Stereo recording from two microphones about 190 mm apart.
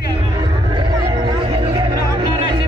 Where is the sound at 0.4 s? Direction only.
25° right (ahead or behind).